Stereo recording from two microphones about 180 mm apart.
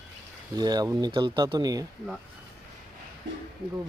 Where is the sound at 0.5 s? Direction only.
20° right (ahead or behind).